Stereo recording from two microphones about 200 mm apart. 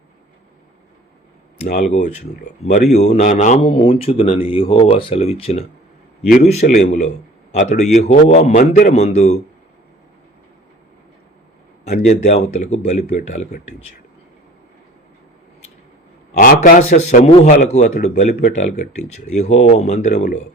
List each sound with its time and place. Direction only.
1.6 s a man's voice: 35° left (ahead or behind)
11.9 s a man's voice: 35° left (ahead or behind)
16.4 s a man's voice: 40° left (ahead or behind)